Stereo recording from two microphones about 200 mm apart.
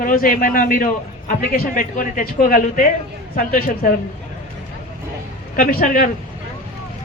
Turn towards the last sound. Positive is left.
turn(degrees=45)  # may be behind; listen again after turning